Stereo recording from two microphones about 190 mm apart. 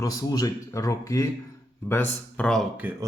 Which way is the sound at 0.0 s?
20° left (ahead or behind).